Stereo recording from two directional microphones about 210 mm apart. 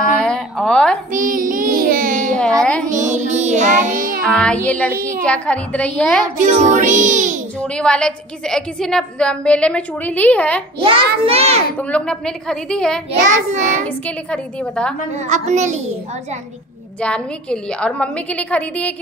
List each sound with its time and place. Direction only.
0.0 s a sound: 5° left (ahead or behind)
1.1 s child singing: 40° right (ahead or behind)
2.3 s a sound: 5° left (ahead or behind)
3.1 s child singing: 35° right (ahead or behind)
4.3 s a woman's voice: 5° left (ahead or behind)
6.4 s music: 35° right (ahead or behind)
7.6 s a woman's voice: 5° left (ahead or behind)
11.2 s a child's voice: 30° right (ahead or behind)
11.8 s a woman's voice: 5° left (ahead or behind)
13.3 s music: 35° right (ahead or behind)
13.8 s a woman's voice: 5° left (ahead or behind)
15.1 s music: 35° right (ahead or behind)
17.0 s a woman's voice: 5° left (ahead or behind)